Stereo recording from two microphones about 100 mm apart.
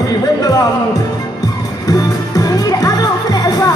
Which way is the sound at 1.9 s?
35° left (ahead or behind).